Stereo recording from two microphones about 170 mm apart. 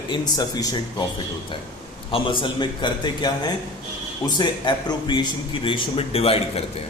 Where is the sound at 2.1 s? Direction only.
30° left (ahead or behind).